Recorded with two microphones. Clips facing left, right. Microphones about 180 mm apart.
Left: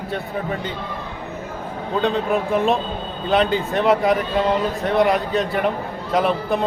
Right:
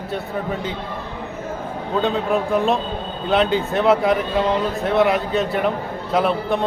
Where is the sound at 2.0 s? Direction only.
Centre (ahead or behind).